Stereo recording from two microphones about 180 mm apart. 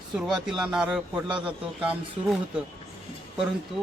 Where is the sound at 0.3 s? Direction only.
Centre (ahead or behind).